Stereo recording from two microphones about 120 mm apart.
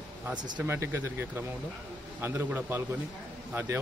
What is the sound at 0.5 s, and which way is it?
Speech, 20° right (ahead or behind).